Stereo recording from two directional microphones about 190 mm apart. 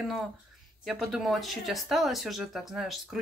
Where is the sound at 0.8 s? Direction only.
Centre (ahead or behind).